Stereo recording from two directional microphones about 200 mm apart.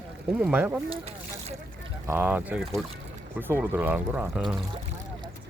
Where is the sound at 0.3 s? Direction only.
5° right (ahead or behind).